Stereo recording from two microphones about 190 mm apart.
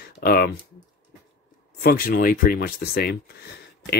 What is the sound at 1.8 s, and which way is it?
Speech, 55° left (ahead or behind).